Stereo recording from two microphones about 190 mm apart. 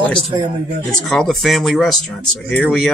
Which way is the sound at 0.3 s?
20° right (ahead or behind).